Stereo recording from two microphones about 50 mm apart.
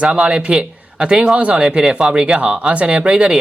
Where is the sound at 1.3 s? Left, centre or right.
Right.